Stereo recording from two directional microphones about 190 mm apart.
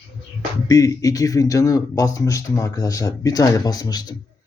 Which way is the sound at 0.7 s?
20° left (ahead or behind).